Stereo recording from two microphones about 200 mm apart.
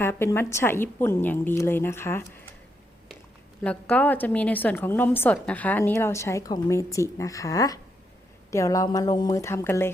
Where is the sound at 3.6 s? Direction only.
5° left (ahead or behind).